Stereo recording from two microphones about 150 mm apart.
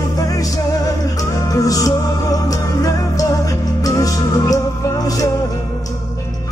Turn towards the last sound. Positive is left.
turn(degrees=25)  # may be behind; listen again after turning